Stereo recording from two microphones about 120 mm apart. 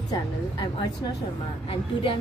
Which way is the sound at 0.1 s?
35° left (ahead or behind).